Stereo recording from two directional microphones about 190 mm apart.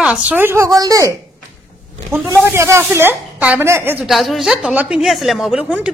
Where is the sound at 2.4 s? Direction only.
15° right (ahead or behind).